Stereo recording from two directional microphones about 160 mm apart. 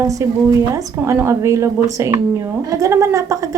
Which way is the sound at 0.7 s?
20° right (ahead or behind).